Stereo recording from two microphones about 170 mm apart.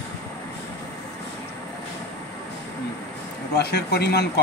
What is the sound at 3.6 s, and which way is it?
Speech, 75° left (ahead or behind).